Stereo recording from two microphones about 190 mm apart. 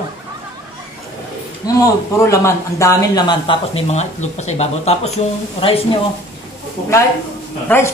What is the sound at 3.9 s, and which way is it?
A man's voice, 35° left (ahead or behind).